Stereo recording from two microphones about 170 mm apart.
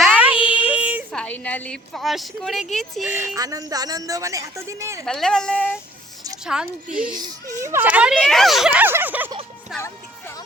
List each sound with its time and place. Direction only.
0.0 s child singing: 10° right (ahead or behind)
0.4 s child singing: 30° left (ahead or behind)
0.7 s a sound: 10° right (ahead or behind)
1.1 s a woman's voice: 5° left (ahead or behind)
3.1 s speech: 15° right (ahead or behind)
5.0 s speech: 5° left (ahead or behind)
6.4 s speech: 5° right (ahead or behind)
7.2 s speech: 20° right (ahead or behind)
9.7 s music: 15° left (ahead or behind)